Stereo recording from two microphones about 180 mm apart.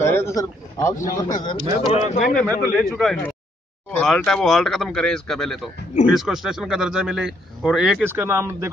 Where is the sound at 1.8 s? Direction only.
35° left (ahead or behind).